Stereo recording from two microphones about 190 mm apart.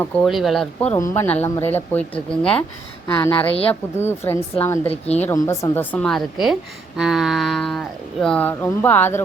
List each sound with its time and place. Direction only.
0.0 s a woman's voice: centre (ahead or behind)
4.9 s speech: 35° left (ahead or behind)
5.2 s a woman's voice: 15° left (ahead or behind)